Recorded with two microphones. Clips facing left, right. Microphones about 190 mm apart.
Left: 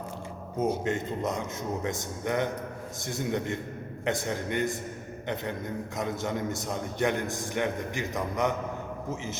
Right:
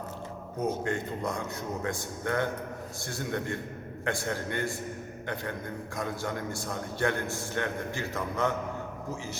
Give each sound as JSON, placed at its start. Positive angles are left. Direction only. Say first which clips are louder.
{"t": 0.6, "sound": "speech", "louder": "left 2 dB", "side_deg": 20}
{"t": 6.0, "sound": "a man's voice", "louder": "left 2 dB", "side_deg": 20}